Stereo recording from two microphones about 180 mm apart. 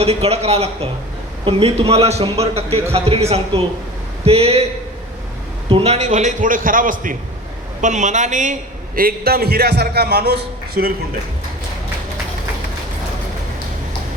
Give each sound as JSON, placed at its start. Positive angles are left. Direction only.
{"t": 0.0, "sound": "a man's voice", "side_deg": -35}
{"t": 5.6, "sound": "a man's voice", "side_deg": -30}
{"t": 9.0, "sound": "a man's voice", "side_deg": -55}